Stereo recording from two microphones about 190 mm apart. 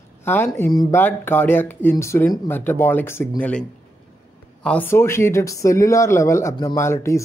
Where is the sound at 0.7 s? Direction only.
20° left (ahead or behind).